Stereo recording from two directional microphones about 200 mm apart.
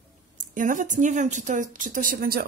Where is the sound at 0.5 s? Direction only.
40° right (ahead or behind).